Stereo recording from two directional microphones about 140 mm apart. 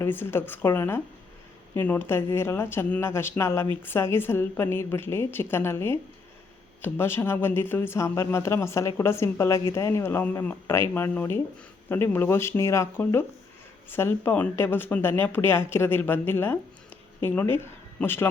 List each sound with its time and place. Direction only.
0.0 s speech: 15° left (ahead or behind)